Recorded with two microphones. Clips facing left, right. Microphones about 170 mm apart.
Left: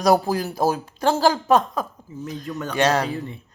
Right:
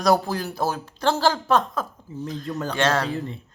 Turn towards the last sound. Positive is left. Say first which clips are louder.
# left 2 dB
turn(degrees=15)  # may be behind; listen again after turning